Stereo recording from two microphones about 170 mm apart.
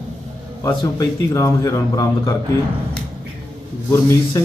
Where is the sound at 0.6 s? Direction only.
20° left (ahead or behind).